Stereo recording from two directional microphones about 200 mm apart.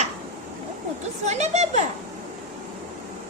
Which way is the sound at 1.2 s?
35° right (ahead or behind).